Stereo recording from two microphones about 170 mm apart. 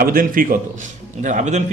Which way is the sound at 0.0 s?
55° right (ahead or behind).